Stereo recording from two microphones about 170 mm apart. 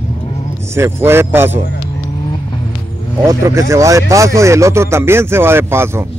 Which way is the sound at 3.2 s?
20° right (ahead or behind).